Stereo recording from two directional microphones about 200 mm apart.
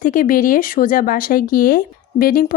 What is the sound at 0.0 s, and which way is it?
Speech, 45° left (ahead or behind).